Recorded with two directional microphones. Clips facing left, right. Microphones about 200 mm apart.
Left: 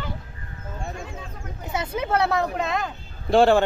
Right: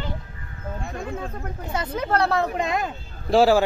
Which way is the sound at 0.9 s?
60° right (ahead or behind).